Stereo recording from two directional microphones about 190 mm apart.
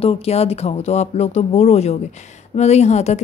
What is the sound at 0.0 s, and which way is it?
Speech, 35° left (ahead or behind).